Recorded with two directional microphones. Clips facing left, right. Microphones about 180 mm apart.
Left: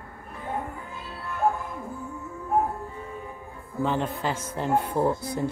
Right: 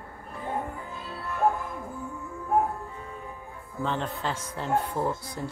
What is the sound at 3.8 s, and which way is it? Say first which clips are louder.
Speech: left 3 dB; 10° left (ahead or behind).